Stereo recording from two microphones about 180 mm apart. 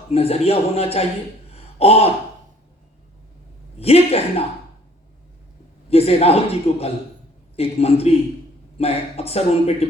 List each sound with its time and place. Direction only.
0.1 s speech: 35° left (ahead or behind)
1.5 s a sound: 35° left (ahead or behind)
3.8 s speech: 35° left (ahead or behind)
5.9 s speech: 35° left (ahead or behind)